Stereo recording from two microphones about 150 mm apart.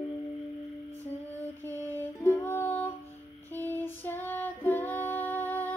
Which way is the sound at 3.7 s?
15° left (ahead or behind).